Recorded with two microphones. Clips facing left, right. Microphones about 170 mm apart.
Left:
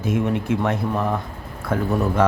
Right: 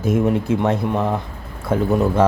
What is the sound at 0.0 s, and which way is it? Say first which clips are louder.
Speech: right 4 dB; 40° right (ahead or behind).